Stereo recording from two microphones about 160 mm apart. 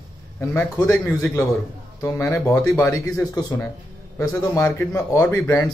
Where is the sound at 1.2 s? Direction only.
20° left (ahead or behind).